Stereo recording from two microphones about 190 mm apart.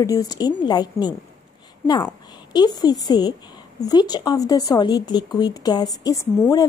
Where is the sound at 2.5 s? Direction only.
20° left (ahead or behind).